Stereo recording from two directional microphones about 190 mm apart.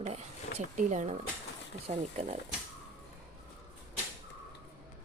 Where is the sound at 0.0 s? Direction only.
35° right (ahead or behind).